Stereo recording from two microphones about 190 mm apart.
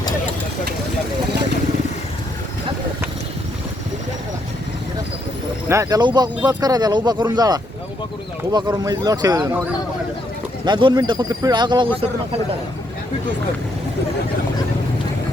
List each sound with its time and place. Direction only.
1.3 s vehicle: 65° right (ahead or behind)
5.6 s speech: 15° right (ahead or behind)
10.7 s speech: 25° right (ahead or behind)